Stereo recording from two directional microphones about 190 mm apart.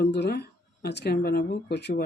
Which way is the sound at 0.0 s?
60° left (ahead or behind).